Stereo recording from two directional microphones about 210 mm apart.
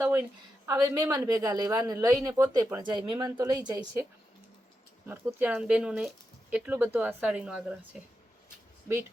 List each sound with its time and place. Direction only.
0.0 s speech: 10° right (ahead or behind)
5.0 s speech: 10° right (ahead or behind)